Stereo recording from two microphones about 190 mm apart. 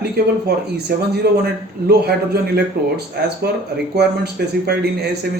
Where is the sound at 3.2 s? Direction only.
60° right (ahead or behind).